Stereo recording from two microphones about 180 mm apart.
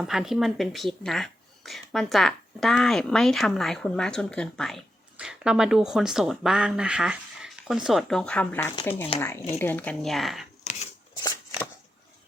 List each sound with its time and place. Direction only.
0.0 s speech: centre (ahead or behind)
10.6 s scissors: 40° left (ahead or behind)
11.2 s a sound: 20° left (ahead or behind)